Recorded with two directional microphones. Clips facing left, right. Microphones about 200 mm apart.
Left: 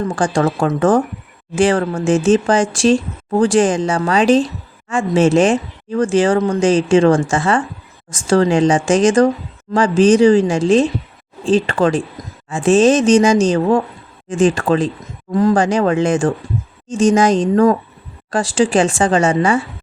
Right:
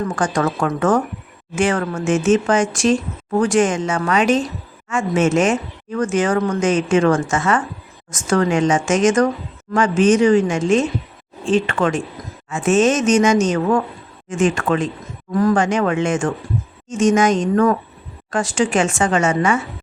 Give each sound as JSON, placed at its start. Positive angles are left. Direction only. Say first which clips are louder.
{"t": 0.2, "sound": "speech", "louder": "left 4 dB", "side_deg": 30}